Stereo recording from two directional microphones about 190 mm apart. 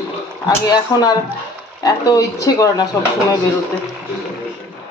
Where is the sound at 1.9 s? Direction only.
20° left (ahead or behind).